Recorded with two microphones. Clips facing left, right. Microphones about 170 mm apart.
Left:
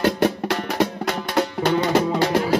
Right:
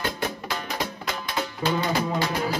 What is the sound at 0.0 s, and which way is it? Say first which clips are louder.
Music: left 10 dB; 70° left (ahead or behind).